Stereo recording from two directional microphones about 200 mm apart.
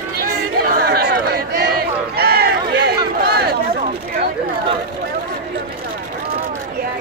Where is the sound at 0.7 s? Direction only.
50° right (ahead or behind).